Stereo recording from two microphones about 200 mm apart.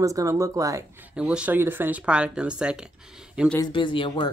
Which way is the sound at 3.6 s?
25° left (ahead or behind).